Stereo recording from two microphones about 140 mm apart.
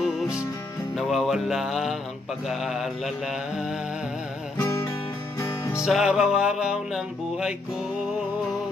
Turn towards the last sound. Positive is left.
turn(degrees=-5)  # may be behind; listen again after turning